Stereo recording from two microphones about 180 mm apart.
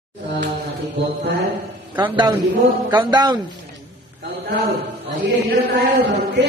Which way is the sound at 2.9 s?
25° right (ahead or behind).